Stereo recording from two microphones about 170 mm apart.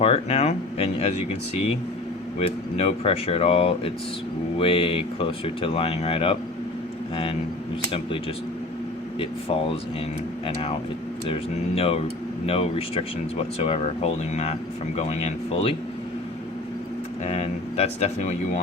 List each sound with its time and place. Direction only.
0.0 s speech: 35° left (ahead or behind)
2.7 s speech: 35° left (ahead or behind)
10.4 s speech: 35° left (ahead or behind)
17.2 s speech: 35° left (ahead or behind)